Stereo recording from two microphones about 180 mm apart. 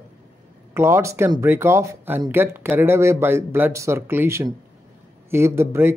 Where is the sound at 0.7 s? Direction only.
15° right (ahead or behind).